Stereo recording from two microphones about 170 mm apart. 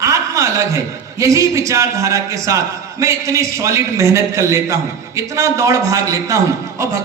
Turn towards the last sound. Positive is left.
turn(degrees=-15)  # may be behind; listen again after turning